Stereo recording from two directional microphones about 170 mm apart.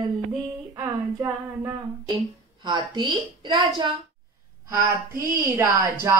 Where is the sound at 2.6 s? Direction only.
25° right (ahead or behind).